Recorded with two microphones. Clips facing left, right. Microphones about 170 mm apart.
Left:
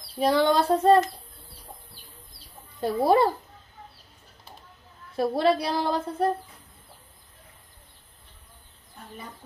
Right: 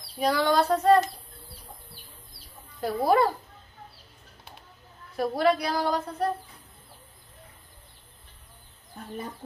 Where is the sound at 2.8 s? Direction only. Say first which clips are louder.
Left 2 dB; 25° left (ahead or behind).